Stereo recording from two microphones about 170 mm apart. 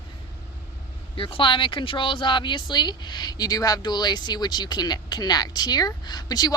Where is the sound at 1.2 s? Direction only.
30° left (ahead or behind).